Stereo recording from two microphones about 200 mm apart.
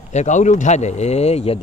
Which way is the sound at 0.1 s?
35° left (ahead or behind).